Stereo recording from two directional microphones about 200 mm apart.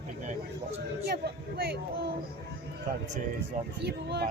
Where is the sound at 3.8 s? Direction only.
55° right (ahead or behind).